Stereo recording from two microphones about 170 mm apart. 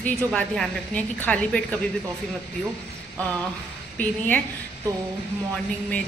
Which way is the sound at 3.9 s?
10° left (ahead or behind).